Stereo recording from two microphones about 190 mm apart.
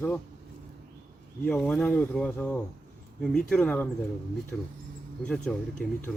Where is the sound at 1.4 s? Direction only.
5° left (ahead or behind).